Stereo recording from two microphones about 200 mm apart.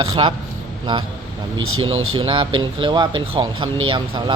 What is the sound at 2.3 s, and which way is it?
A man's voice, 25° right (ahead or behind).